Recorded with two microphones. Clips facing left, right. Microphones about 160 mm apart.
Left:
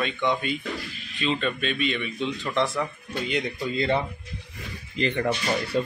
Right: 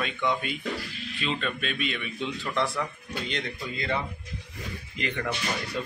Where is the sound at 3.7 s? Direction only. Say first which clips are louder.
Left 6 dB; 30° left (ahead or behind).